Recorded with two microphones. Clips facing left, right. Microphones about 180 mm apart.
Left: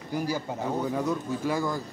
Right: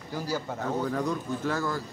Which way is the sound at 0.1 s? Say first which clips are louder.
Left 2 dB; 15° left (ahead or behind).